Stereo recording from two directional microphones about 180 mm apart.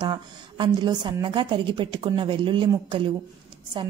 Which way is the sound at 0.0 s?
25° right (ahead or behind).